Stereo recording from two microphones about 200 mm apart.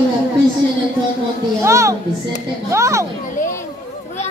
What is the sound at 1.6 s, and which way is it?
A child's voice, 15° right (ahead or behind).